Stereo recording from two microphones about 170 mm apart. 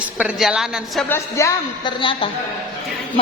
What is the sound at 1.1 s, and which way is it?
A woman's voice, 15° left (ahead or behind).